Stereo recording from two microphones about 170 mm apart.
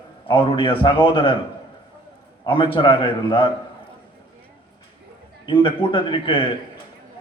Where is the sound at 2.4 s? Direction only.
30° left (ahead or behind).